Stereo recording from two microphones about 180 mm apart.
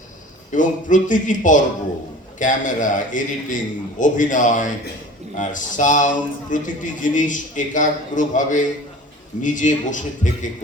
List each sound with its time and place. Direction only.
0.5 s a man's voice: 45° left (ahead or behind)